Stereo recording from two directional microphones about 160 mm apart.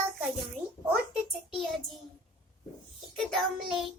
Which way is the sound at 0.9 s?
5° right (ahead or behind).